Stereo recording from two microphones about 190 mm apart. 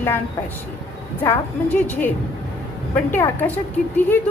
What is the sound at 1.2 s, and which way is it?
A woman's voice, 10° left (ahead or behind).